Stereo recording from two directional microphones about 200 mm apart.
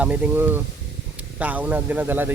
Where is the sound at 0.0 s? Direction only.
5° right (ahead or behind).